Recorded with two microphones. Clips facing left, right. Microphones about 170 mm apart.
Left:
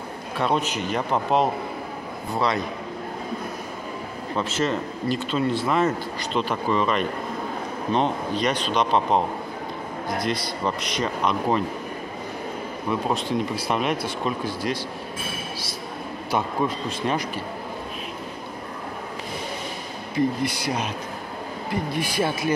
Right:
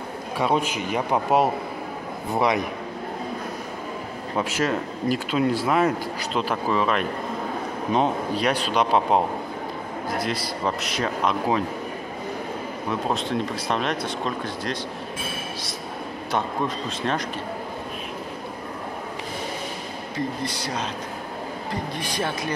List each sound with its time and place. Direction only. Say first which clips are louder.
0.4 s speech: right 1 dB; 10° right (ahead or behind)
4.4 s speech: even; 10° right (ahead or behind)
10.2 s speech: left 2 dB; 5° right (ahead or behind)
13.1 s speech: left 1 dB; 5° left (ahead or behind)
16.3 s speech: left 2 dB; 5° left (ahead or behind)
20.2 s speech: left 6 dB; 10° left (ahead or behind)
22.0 s speech: left 3 dB; 10° left (ahead or behind)